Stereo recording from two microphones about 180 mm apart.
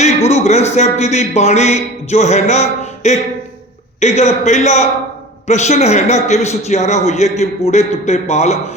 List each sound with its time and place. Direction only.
0.0 s a man's voice: 35° left (ahead or behind)